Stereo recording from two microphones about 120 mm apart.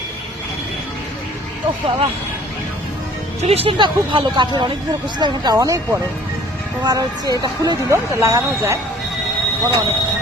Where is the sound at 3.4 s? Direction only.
55° right (ahead or behind).